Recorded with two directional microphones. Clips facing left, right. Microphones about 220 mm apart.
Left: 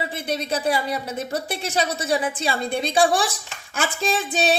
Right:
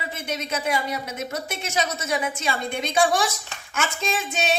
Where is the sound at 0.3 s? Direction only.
35° left (ahead or behind).